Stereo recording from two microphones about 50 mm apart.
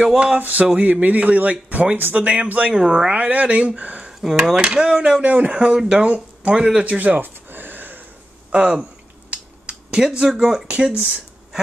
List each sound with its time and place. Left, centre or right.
0.4 s speech: right
2.7 s speech: centre
3.1 s speech: right
4.2 s speech: centre
4.6 s speech: centre
5.2 s speech: right
5.6 s speech: centre
6.8 s speech: right
7.2 s a sound: right
8.5 s speech: right
9.3 s finger snapping: centre
10.7 s speech: right